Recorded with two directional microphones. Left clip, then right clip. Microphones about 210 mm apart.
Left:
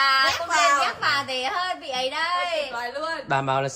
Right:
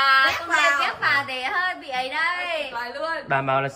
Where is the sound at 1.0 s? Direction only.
30° left (ahead or behind).